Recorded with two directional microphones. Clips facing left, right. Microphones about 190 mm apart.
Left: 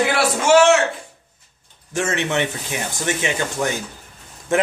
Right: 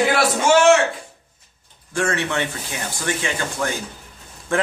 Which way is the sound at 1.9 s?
20° left (ahead or behind).